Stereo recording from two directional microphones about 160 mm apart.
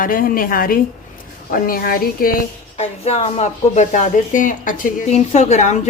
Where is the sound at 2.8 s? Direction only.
45° left (ahead or behind).